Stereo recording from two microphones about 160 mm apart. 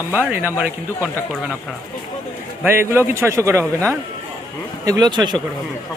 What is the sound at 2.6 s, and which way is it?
Speech, 15° right (ahead or behind).